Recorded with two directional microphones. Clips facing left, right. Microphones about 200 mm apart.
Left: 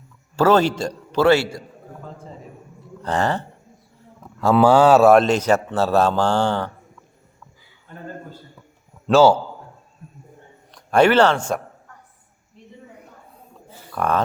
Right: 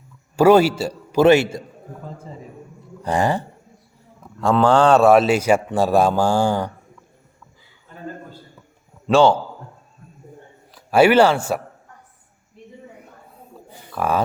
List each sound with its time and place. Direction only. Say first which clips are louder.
0.3 s a man's voice: right 3 dB; 10° right (ahead or behind)
1.2 s a man's voice: right 3 dB; 20° right (ahead or behind)
3.0 s speech: right 2 dB; 10° right (ahead or behind)
4.4 s a man's voice: left 1 dB; 5° left (ahead or behind)
9.0 s a man's voice: left 1 dB; 5° left (ahead or behind)
10.7 s a man's voice: right 1 dB; 5° right (ahead or behind)
13.9 s a man's voice: even; 5° right (ahead or behind)